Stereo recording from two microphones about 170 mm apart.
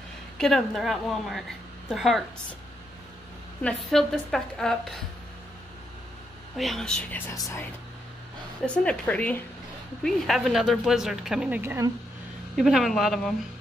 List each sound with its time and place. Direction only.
0.4 s speech: centre (ahead or behind)
3.6 s speech: centre (ahead or behind)
6.5 s speech: centre (ahead or behind)
7.3 s speech: 20° left (ahead or behind)
8.6 s a woman's voice: 5° left (ahead or behind); by 11.9 s 15° right (ahead or behind)
12.5 s speech: centre (ahead or behind)